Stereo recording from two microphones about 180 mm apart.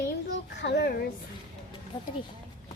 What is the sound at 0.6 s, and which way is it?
Speech, 70° left (ahead or behind).